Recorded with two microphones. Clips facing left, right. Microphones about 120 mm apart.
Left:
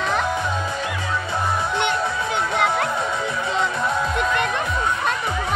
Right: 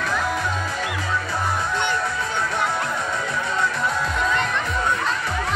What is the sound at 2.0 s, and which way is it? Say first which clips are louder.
Music: left 2 dB; 20° left (ahead or behind).